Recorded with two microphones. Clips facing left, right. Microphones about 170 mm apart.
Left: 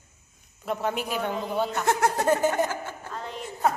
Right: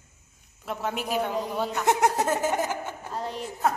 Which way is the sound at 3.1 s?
35° right (ahead or behind).